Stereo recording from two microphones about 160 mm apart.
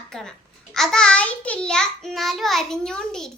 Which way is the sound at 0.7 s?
5° left (ahead or behind).